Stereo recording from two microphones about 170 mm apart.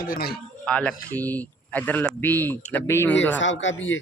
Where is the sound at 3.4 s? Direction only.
90° left.